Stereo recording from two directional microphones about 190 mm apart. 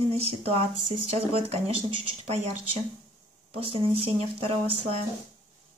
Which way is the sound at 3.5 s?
30° right (ahead or behind).